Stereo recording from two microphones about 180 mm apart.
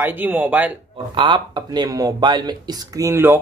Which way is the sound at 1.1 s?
25° right (ahead or behind).